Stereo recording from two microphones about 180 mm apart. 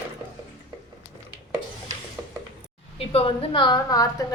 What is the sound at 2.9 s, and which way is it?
A woman's voice, 30° left (ahead or behind).